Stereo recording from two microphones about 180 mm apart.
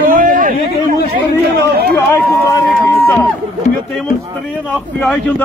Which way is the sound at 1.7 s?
60° right (ahead or behind).